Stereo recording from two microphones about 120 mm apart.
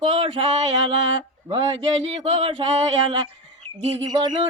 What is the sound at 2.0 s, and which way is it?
Speech, 60° right (ahead or behind).